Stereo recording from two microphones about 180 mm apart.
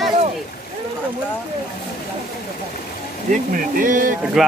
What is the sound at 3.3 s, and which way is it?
Speech, 50° right (ahead or behind).